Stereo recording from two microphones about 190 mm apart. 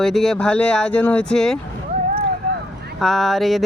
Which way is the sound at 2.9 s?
Centre (ahead or behind).